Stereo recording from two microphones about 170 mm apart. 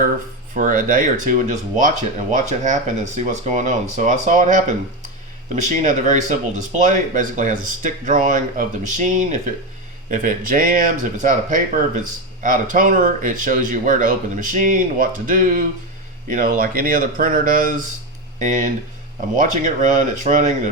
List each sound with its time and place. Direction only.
0.5 s speech: 50° right (ahead or behind)